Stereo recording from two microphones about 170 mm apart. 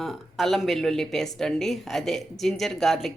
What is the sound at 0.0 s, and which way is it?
Speech, centre (ahead or behind).